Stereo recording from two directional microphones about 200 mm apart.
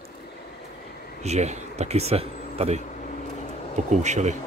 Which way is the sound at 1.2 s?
35° right (ahead or behind).